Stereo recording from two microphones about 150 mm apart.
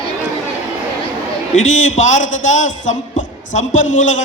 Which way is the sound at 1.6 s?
55° left (ahead or behind).